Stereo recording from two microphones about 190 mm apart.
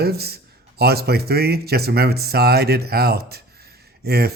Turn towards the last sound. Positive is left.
turn(degrees=-55)  # may be behind; listen again after turning